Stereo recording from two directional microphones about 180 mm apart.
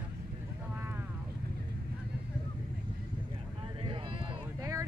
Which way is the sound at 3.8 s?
30° right (ahead or behind).